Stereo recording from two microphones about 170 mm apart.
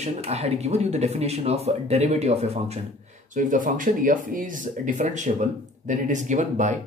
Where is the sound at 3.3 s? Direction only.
50° right (ahead or behind).